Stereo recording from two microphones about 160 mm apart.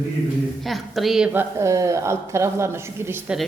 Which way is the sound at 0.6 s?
Centre (ahead or behind).